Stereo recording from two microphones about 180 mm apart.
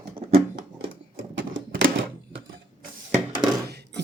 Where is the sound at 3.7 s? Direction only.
65° right (ahead or behind).